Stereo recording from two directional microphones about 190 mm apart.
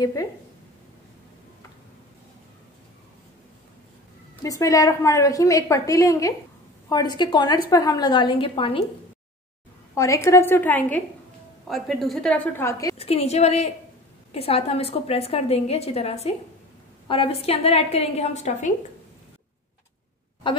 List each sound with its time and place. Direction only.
0.0 s a woman's voice: 20° left (ahead or behind)
4.4 s a woman's voice: 15° left (ahead or behind)
9.9 s a woman's voice: 15° left (ahead or behind)
12.9 s a woman's voice: 30° left (ahead or behind)